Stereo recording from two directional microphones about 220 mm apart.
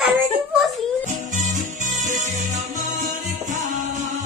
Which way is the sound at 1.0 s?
35° right (ahead or behind).